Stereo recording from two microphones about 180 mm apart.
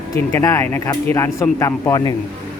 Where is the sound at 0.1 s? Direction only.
15° left (ahead or behind).